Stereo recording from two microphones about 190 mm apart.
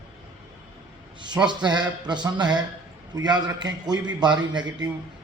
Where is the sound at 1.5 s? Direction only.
25° right (ahead or behind).